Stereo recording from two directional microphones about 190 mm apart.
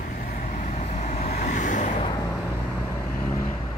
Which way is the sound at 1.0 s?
35° left (ahead or behind).